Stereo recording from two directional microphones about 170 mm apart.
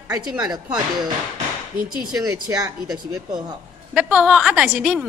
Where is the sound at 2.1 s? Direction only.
20° right (ahead or behind).